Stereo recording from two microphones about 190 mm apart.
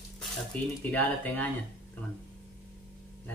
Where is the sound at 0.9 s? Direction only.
10° left (ahead or behind).